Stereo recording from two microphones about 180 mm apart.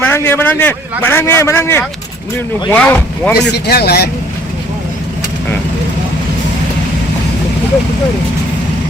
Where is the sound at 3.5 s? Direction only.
65° left (ahead or behind).